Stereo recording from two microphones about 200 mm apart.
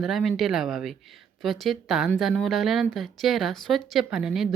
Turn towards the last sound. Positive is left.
turn(degrees=0)  # may be behind; listen again after turning